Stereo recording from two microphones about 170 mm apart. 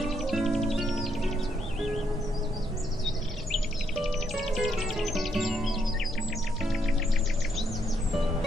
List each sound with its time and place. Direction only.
0.0 s music: centre (ahead or behind)
3.5 s music: centre (ahead or behind)